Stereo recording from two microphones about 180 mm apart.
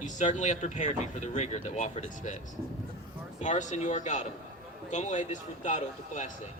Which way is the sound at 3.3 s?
40° left (ahead or behind).